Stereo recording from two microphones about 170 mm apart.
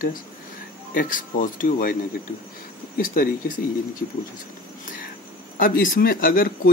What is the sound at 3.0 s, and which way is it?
Speech, 50° left (ahead or behind).